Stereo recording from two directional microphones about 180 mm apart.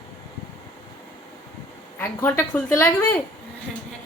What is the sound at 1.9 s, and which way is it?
A woman's voice, 10° left (ahead or behind).